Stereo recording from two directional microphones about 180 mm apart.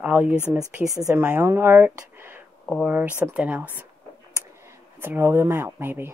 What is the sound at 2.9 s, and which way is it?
Speech, 10° right (ahead or behind).